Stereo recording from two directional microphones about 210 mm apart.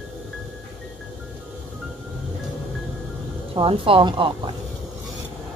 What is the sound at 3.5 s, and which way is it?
A woman's voice, 25° right (ahead or behind).